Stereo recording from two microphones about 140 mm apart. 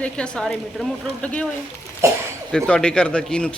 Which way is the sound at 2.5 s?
5° left (ahead or behind).